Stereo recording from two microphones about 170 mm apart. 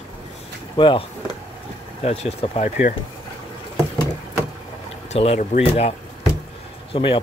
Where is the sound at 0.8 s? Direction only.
30° left (ahead or behind).